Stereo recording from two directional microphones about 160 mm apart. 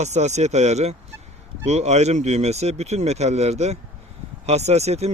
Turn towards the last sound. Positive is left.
turn(degrees=-40)  # may be behind; listen again after turning